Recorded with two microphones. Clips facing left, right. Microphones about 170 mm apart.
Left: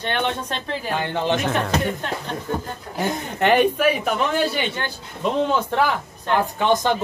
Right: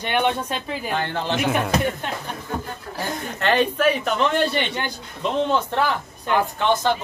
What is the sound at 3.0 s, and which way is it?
A man's voice, 15° left (ahead or behind).